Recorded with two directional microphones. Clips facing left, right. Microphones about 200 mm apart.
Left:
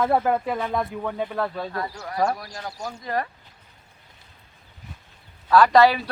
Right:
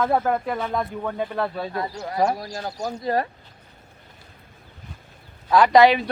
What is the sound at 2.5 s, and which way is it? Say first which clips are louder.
Speech: right 5 dB; 40° right (ahead or behind).